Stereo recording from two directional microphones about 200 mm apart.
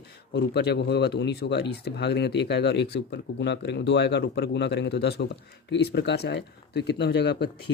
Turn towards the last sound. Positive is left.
turn(degrees=55)  # may be behind; listen again after turning